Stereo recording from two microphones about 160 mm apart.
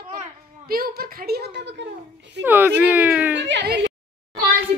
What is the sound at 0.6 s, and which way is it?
A child's voice, 70° right (ahead or behind).